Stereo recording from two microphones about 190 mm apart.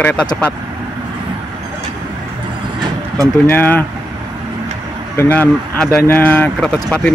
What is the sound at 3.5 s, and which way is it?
Speech, 10° left (ahead or behind).